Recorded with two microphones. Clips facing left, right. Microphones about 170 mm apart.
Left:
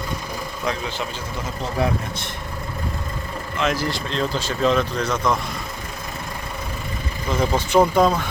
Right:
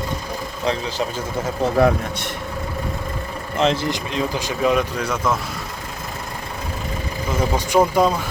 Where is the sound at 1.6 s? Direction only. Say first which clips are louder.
Right 7 dB; 60° right (ahead or behind).